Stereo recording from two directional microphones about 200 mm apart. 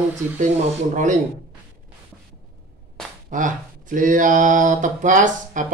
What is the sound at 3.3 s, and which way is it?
Speech, 40° right (ahead or behind).